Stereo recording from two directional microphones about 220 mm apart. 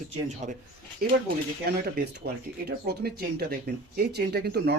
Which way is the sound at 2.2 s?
45° right (ahead or behind).